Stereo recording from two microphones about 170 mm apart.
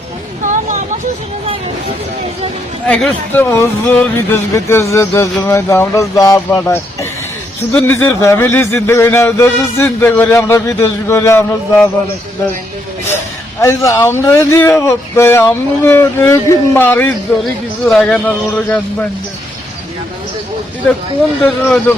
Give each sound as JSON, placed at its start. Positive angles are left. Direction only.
{"t": 0.4, "sound": "vehicle", "side_deg": -50}
{"t": 2.8, "sound": "speech", "side_deg": 5}
{"t": 13.6, "sound": "speech", "side_deg": 15}
{"t": 17.4, "sound": "speech", "side_deg": 0}
{"t": 21.4, "sound": "speech", "side_deg": 5}